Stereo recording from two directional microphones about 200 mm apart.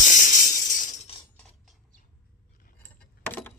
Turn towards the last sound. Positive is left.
turn(degrees=10)  # may be behind; listen again after turning